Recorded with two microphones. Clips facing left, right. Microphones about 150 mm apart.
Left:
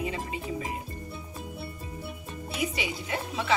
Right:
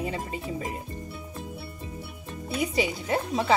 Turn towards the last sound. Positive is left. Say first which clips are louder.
# right 5 dB
turn(degrees=-35)  # may be behind; listen again after turning